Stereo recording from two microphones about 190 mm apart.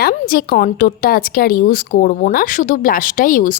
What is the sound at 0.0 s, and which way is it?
Speech, 50° left (ahead or behind).